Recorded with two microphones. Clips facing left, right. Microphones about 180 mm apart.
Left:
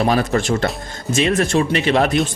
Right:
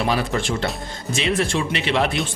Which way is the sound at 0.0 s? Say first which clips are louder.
Left 5 dB; 45° left (ahead or behind).